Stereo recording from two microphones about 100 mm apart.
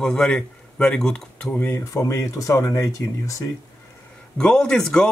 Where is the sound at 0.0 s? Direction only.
5° left (ahead or behind).